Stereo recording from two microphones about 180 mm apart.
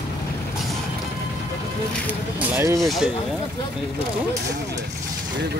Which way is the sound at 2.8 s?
Centre (ahead or behind).